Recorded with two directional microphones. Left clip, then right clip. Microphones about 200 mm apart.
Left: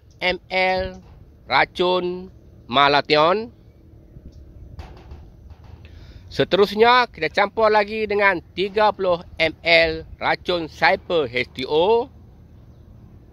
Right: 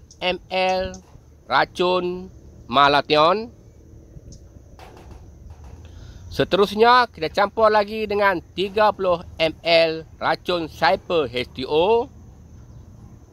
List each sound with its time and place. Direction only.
0.2 s speech: 40° left (ahead or behind)
6.3 s speech: 35° left (ahead or behind)